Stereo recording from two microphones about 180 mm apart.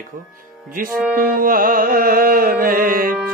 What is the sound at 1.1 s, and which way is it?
Music, 50° right (ahead or behind).